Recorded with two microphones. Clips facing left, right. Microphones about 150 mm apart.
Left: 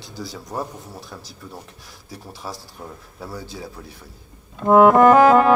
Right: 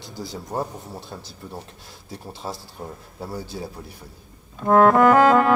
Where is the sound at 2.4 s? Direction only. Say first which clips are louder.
Right 1 dB; 45° right (ahead or behind).